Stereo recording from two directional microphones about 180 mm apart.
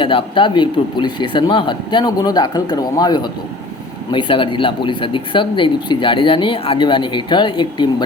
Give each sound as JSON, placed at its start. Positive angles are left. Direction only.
{"t": 0.0, "sound": "speech", "side_deg": 30}